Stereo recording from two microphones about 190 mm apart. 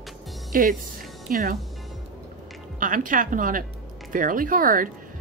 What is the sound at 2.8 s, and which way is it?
Speech, 45° right (ahead or behind).